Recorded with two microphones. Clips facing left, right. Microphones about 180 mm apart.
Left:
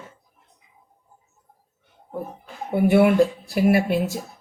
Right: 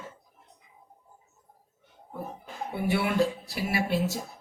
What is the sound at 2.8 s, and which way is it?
Speech, 50° left (ahead or behind).